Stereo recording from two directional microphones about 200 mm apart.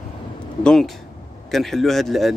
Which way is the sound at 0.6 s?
Centre (ahead or behind).